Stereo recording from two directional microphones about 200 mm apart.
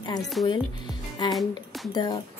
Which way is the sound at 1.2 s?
20° left (ahead or behind).